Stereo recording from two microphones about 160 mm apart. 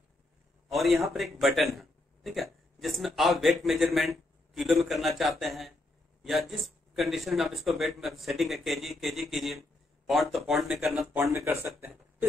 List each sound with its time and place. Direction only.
0.7 s a man's voice: centre (ahead or behind)
11.1 s speech: 15° right (ahead or behind)